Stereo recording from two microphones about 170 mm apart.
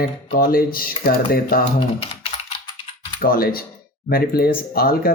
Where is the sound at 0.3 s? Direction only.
60° left (ahead or behind).